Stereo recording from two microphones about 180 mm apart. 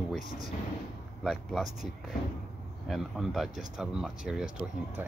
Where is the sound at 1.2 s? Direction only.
Centre (ahead or behind).